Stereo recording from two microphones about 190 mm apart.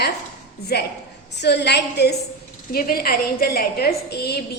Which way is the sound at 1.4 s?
65° left (ahead or behind).